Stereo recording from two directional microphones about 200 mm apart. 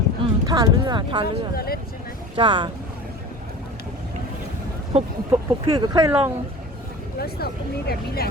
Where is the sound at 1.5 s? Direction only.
50° left (ahead or behind).